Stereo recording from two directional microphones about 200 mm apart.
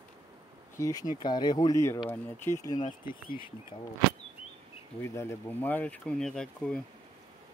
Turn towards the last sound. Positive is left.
turn(degrees=5)  # may be behind; listen again after turning